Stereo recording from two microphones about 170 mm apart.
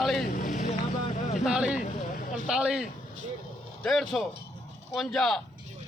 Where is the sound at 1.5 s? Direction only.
5° right (ahead or behind).